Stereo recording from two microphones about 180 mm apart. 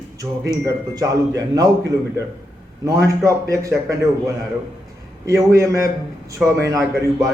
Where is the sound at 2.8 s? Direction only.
15° right (ahead or behind).